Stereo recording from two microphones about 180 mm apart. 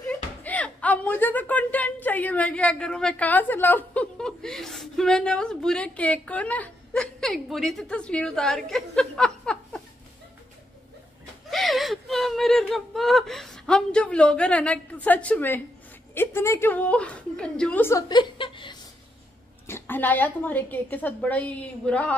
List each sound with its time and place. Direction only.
0.1 s speech: 10° left (ahead or behind)
11.5 s a woman's voice: centre (ahead or behind)
18.0 s speech: 25° left (ahead or behind)
19.6 s a woman's voice: 10° left (ahead or behind)